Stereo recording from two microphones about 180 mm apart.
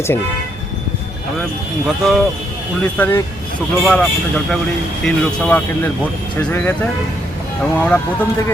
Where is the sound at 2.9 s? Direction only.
10° left (ahead or behind).